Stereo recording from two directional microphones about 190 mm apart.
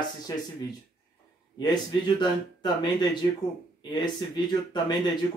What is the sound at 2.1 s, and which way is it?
Speech, 25° left (ahead or behind).